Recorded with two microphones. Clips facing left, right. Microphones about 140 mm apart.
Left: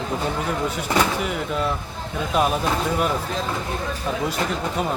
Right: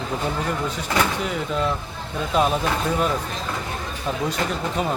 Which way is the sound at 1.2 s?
5° left (ahead or behind).